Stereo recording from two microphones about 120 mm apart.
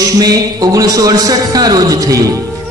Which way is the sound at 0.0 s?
30° right (ahead or behind).